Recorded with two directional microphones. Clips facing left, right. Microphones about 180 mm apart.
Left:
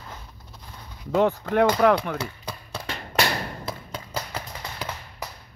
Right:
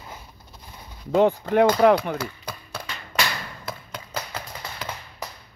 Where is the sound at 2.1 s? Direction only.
25° left (ahead or behind).